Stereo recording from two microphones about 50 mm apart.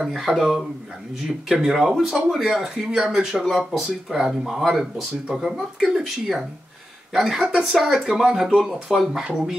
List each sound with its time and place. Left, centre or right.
0.0 s speech: centre
7.2 s speech: centre
7.4 s speech: centre
9.2 s speech: centre